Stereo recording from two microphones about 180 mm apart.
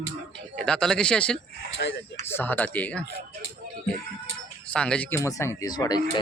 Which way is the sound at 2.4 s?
10° left (ahead or behind).